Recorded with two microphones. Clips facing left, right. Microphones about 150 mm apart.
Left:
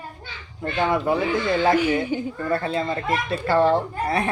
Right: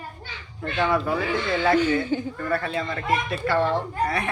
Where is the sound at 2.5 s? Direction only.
25° left (ahead or behind).